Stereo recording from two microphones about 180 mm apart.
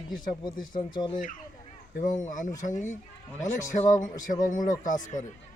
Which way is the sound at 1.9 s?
45° left (ahead or behind).